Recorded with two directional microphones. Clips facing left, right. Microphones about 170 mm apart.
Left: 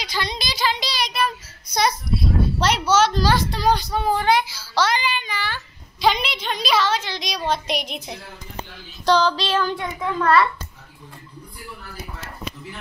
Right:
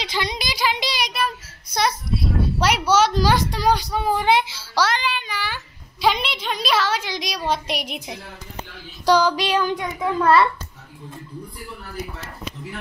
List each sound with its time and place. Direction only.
0.0 s a sound: 20° right (ahead or behind)
1.1 s child singing: 5° right (ahead or behind)
2.6 s a woman's voice: 10° right (ahead or behind)
4.3 s a child's voice: 25° right (ahead or behind)
4.9 s a child's voice: centre (ahead or behind); by 10.5 s 25° right (ahead or behind)